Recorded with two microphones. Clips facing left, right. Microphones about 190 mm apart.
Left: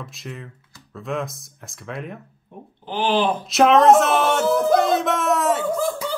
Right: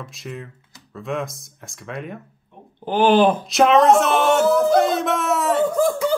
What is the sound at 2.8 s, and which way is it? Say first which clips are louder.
Speech: right 6 dB; 50° right (ahead or behind).